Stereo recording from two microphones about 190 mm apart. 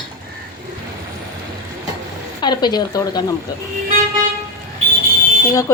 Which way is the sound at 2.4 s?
20° left (ahead or behind).